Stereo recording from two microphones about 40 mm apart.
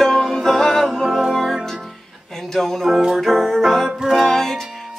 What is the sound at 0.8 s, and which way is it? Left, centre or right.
Music, centre.